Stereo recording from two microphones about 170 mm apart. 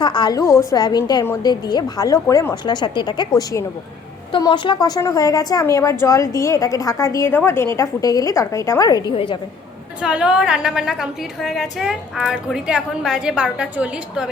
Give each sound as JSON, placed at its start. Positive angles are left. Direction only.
{"t": 0.0, "sound": "a woman's voice", "side_deg": 25}
{"t": 10.0, "sound": "a woman's voice", "side_deg": -5}